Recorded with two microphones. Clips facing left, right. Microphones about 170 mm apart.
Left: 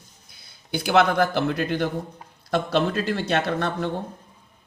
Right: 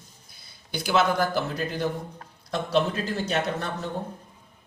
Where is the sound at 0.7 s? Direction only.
60° left (ahead or behind).